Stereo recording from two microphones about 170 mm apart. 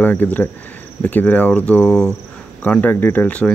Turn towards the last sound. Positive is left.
turn(degrees=10)  # may be behind; listen again after turning